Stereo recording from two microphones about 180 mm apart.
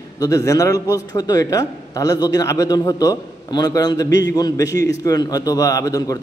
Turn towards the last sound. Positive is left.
turn(degrees=20)  # may be behind; listen again after turning